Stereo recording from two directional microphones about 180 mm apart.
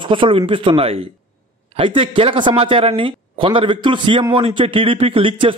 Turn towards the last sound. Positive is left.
turn(degrees=-30)  # may be behind; listen again after turning